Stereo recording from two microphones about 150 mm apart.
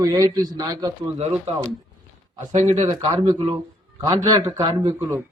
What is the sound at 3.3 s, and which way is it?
Speech, 35° right (ahead or behind).